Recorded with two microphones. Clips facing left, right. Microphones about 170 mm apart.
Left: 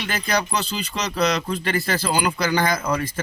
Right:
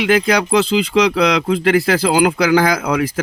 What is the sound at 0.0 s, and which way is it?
Speech, 90° right.